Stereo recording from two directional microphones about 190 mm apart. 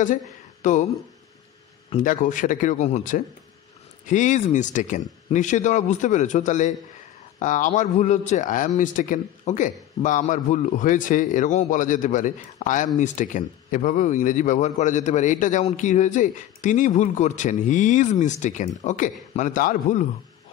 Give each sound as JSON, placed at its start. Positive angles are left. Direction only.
{"t": 0.0, "sound": "speech", "side_deg": 40}
{"t": 2.0, "sound": "speech", "side_deg": 45}